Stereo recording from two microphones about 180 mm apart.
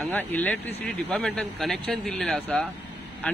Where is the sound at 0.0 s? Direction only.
10° left (ahead or behind).